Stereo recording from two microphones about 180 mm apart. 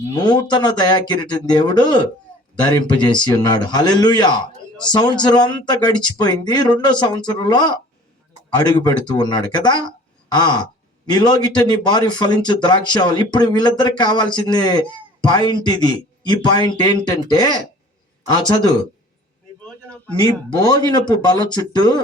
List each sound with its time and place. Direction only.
0.1 s a man's voice: 20° left (ahead or behind)
20.2 s a man's voice: 20° left (ahead or behind)